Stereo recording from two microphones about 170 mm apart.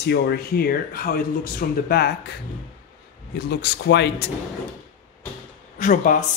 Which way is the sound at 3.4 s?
75° left (ahead or behind).